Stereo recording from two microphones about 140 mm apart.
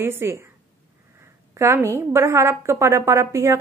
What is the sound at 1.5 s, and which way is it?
A woman's voice, 20° right (ahead or behind).